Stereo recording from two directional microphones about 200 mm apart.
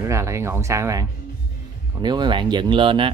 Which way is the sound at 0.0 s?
15° right (ahead or behind).